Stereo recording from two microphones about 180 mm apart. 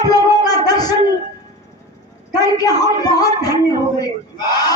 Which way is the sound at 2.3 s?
20° left (ahead or behind).